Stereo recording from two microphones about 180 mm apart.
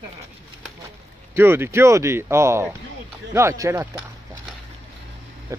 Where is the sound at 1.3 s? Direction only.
15° right (ahead or behind).